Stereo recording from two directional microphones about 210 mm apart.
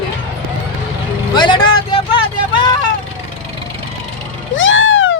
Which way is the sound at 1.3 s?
20° left (ahead or behind).